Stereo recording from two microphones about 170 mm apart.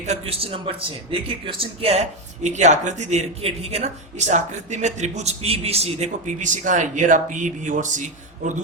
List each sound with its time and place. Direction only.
0.0 s a man's voice: 40° right (ahead or behind)